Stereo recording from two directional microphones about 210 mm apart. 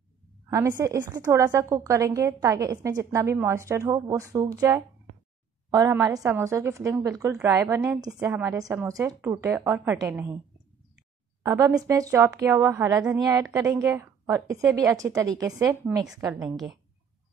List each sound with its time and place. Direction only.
0.5 s a woman's voice: 15° right (ahead or behind)
11.4 s a woman's voice: 15° right (ahead or behind)
16.4 s a woman's voice: centre (ahead or behind)